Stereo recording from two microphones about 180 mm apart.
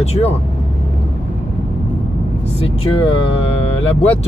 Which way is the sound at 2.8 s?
30° left (ahead or behind).